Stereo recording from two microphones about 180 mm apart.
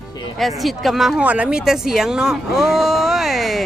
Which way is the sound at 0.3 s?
Centre (ahead or behind).